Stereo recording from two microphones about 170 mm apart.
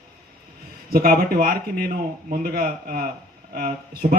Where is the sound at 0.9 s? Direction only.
60° right (ahead or behind).